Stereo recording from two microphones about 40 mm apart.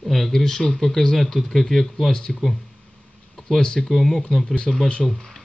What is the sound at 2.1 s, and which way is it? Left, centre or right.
Speech, centre.